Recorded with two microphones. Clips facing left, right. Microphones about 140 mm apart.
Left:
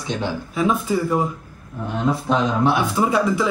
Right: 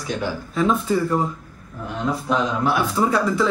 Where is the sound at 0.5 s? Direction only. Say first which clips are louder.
Right 1 dB; 5° left (ahead or behind).